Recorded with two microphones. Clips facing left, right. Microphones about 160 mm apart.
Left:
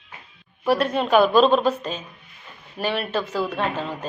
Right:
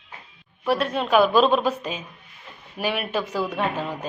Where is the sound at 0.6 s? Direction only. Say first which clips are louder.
Left 2 dB; centre (ahead or behind).